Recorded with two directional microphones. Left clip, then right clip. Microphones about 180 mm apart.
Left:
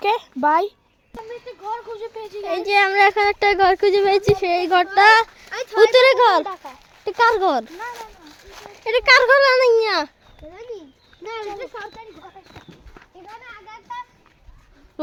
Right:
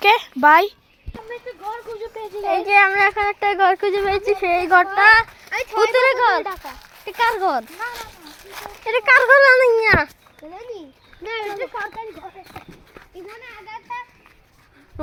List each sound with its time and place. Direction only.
0.0 s a sound: 5° left (ahead or behind)
2.4 s a child's voice: 25° left (ahead or behind); by 4.2 s 50° left (ahead or behind)
4.3 s speech: 25° left (ahead or behind)
4.9 s speech: 60° left (ahead or behind)
6.4 s speech: 10° right (ahead or behind)
7.0 s a child's voice: 60° left (ahead or behind)
7.9 s a sound: 55° right (ahead or behind)
8.8 s speech: 35° left (ahead or behind)
9.3 s a child's voice: 15° left (ahead or behind)
9.6 s speech: 30° left (ahead or behind)
11.2 s speech: 30° left (ahead or behind)